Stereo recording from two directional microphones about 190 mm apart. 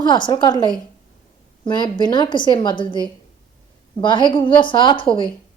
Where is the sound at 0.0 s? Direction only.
25° left (ahead or behind).